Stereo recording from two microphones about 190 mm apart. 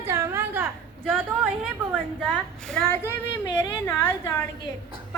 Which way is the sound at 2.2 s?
5° left (ahead or behind).